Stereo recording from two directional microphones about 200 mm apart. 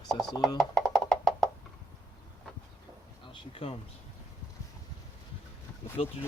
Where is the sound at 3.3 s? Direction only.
25° left (ahead or behind).